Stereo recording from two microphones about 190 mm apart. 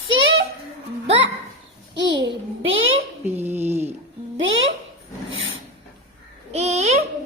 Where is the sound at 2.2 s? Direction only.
85° right.